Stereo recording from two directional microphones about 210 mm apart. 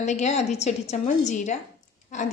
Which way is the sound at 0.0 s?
35° left (ahead or behind).